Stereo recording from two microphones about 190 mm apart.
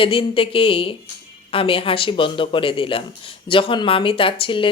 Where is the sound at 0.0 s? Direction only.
30° left (ahead or behind).